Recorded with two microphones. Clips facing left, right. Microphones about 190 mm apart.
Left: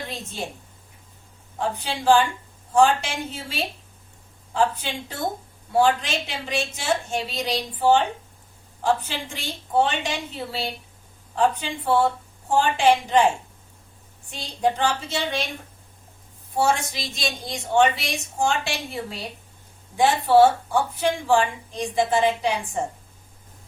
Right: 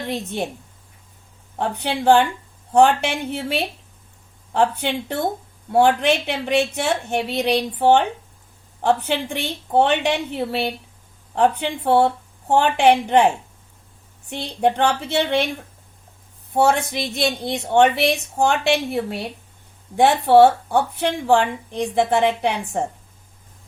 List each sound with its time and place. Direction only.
0.1 s speech: 60° right (ahead or behind)
1.5 s speech: 60° right (ahead or behind)
16.6 s speech: 60° right (ahead or behind)